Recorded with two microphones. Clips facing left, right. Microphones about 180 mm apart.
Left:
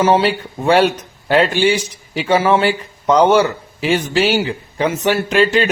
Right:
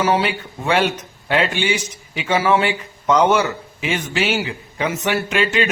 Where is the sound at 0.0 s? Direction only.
30° left (ahead or behind).